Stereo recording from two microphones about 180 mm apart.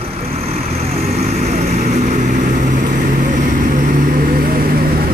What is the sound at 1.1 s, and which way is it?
Vehicle, 40° right (ahead or behind).